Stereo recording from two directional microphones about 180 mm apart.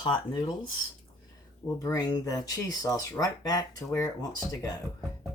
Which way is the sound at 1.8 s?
20° left (ahead or behind).